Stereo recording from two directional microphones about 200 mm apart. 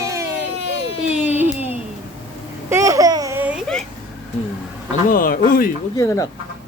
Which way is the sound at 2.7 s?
15° right (ahead or behind).